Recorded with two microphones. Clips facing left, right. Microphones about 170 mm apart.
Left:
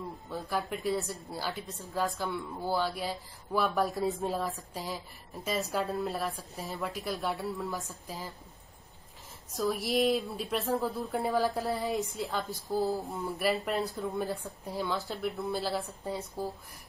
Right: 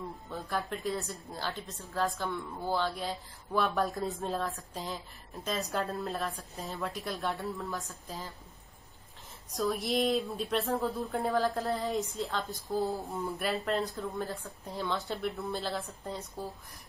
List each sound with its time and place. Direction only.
0.3 s a woman's voice: 5° left (ahead or behind)
9.5 s a woman's voice: centre (ahead or behind)
12.6 s a woman's voice: centre (ahead or behind)
14.1 s speech: 15° left (ahead or behind)
14.8 s a woman's voice: centre (ahead or behind)